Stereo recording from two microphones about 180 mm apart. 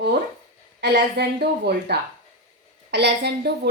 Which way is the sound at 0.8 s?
65° right (ahead or behind).